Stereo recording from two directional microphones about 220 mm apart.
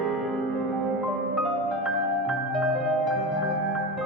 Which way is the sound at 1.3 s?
Centre (ahead or behind).